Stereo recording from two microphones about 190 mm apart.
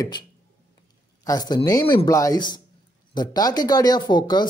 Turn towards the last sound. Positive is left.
turn(degrees=25)  # may be behind; listen again after turning